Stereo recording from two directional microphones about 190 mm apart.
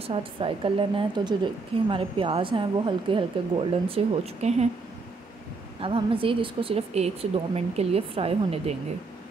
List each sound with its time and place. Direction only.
0.0 s a woman's voice: 30° right (ahead or behind)
5.8 s a woman's voice: 30° right (ahead or behind)